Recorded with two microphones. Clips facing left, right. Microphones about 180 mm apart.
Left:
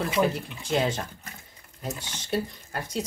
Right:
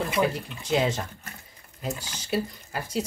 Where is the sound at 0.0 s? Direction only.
Centre (ahead or behind).